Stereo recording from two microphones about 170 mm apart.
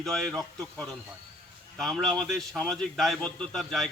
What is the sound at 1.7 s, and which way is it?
A man's voice, centre (ahead or behind).